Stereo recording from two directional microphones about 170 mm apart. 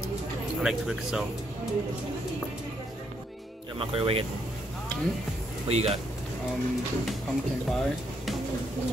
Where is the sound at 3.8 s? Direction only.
35° right (ahead or behind).